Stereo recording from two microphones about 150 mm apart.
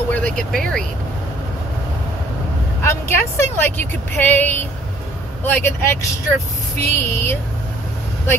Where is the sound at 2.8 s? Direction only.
15° left (ahead or behind).